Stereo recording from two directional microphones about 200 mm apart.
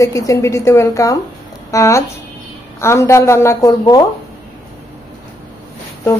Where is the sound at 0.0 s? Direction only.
15° left (ahead or behind).